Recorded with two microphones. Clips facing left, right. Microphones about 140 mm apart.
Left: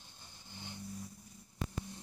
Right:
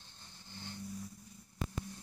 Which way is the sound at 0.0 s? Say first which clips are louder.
Even; 15° left (ahead or behind).